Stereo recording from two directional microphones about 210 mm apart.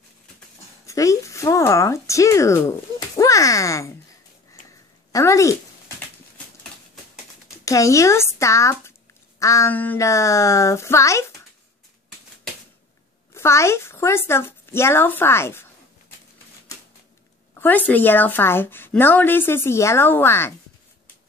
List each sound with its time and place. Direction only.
0.8 s a child's voice: 15° left (ahead or behind)
5.1 s a woman's voice: 15° left (ahead or behind)
7.6 s a woman's voice: 15° left (ahead or behind)
13.3 s a woman's voice: 15° left (ahead or behind)
17.6 s a woman's voice: 10° left (ahead or behind)